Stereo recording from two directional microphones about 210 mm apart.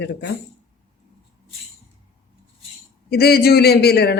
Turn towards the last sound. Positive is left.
turn(degrees=50)  # may be behind; listen again after turning